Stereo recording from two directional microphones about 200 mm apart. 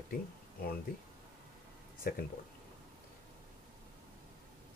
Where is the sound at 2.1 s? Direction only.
50° left (ahead or behind).